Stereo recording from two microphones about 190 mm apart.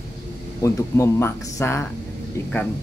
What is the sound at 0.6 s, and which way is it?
Speech, 15° left (ahead or behind).